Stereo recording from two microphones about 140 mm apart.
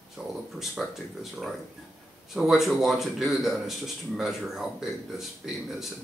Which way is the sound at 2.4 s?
Centre (ahead or behind).